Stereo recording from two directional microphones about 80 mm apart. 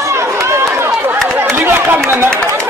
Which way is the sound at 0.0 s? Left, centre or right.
Right.